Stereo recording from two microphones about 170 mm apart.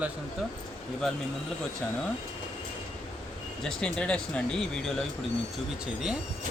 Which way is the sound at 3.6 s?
5° left (ahead or behind).